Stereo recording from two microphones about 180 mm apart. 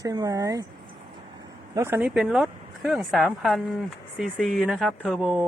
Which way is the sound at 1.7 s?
15° right (ahead or behind).